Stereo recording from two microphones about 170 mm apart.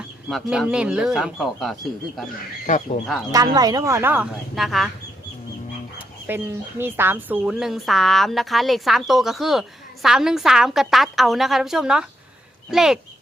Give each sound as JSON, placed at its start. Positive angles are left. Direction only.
{"t": 0.3, "sound": "speech", "side_deg": 0}
{"t": 2.6, "sound": "speech", "side_deg": 45}
{"t": 3.3, "sound": "speech", "side_deg": -20}
{"t": 6.2, "sound": "speech", "side_deg": -10}